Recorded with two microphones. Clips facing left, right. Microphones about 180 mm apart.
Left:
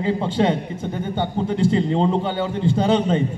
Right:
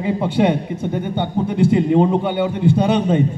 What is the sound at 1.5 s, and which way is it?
A man's voice, 15° right (ahead or behind).